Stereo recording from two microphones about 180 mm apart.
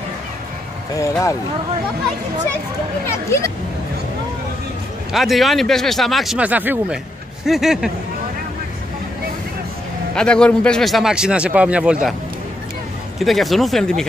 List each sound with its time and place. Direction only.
1.0 s speech: 15° left (ahead or behind)
3.3 s speech: 15° left (ahead or behind)
5.1 s speech: centre (ahead or behind)
10.1 s speech: 5° left (ahead or behind)
13.2 s speech: centre (ahead or behind)